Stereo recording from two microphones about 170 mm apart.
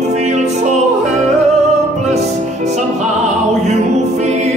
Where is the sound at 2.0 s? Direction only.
40° right (ahead or behind).